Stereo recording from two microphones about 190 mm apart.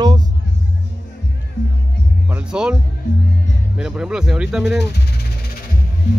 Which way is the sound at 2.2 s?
5° right (ahead or behind).